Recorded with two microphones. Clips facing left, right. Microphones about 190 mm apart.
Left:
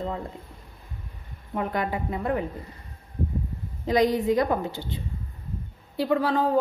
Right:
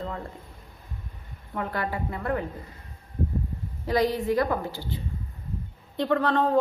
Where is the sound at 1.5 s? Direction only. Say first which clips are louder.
Left 3 dB; 15° left (ahead or behind).